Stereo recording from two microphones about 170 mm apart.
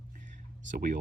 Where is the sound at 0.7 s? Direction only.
50° right (ahead or behind).